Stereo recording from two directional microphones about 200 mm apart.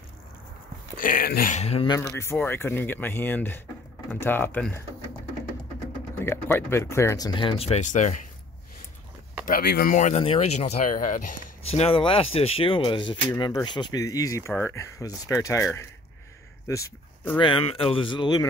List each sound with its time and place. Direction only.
0.9 s speech: 45° left (ahead or behind); by 2.0 s 30° left (ahead or behind)
2.0 s speech: 15° left (ahead or behind)
6.2 s speech: 10° left (ahead or behind); by 8.2 s 40° left (ahead or behind)
9.5 s speech: 50° left (ahead or behind)
9.9 s speech: 35° left (ahead or behind)
11.7 s speech: 30° left (ahead or behind); by 17.4 s 15° left (ahead or behind)
17.4 s speech: 25° left (ahead or behind)